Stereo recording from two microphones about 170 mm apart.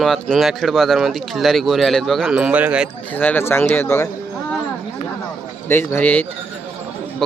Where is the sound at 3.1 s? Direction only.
10° left (ahead or behind).